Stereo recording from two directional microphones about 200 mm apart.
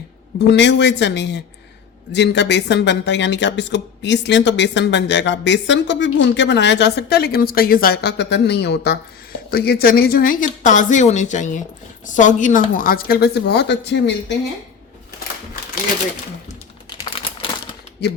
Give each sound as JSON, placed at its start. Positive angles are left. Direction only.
{"t": 0.3, "sound": "a woman's voice", "side_deg": 60}